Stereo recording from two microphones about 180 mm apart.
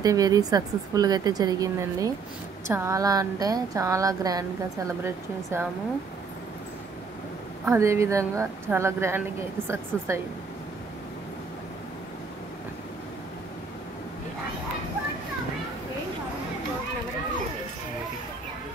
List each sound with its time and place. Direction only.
0.0 s speech: 20° right (ahead or behind)
7.7 s a woman's voice: 15° right (ahead or behind)